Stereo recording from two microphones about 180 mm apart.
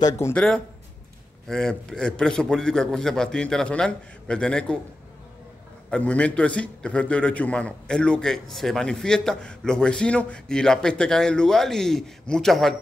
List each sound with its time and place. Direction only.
0.0 s speech: 15° left (ahead or behind)
1.5 s a man's voice: 5° left (ahead or behind)
5.9 s a man's voice: 5° left (ahead or behind)